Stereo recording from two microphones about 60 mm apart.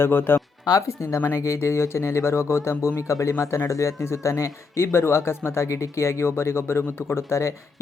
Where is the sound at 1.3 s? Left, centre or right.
Left.